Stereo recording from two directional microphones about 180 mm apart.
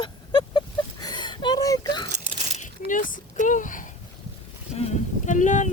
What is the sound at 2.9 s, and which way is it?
Speech, 50° left (ahead or behind).